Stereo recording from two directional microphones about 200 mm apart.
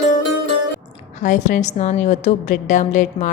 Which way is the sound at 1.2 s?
40° left (ahead or behind).